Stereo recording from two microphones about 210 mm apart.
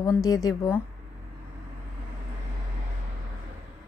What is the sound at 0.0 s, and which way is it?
Speech, 15° left (ahead or behind).